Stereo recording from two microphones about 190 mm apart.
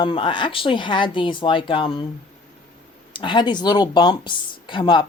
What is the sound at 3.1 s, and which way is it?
Speech, 25° left (ahead or behind).